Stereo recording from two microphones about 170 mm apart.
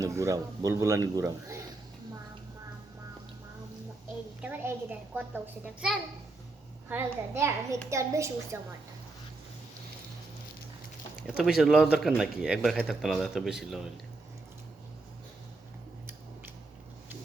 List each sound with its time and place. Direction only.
0.0 s a man's voice: 20° right (ahead or behind)
4.4 s a man's voice: 10° right (ahead or behind)
6.8 s a man's voice: 15° right (ahead or behind)
11.3 s speech: centre (ahead or behind)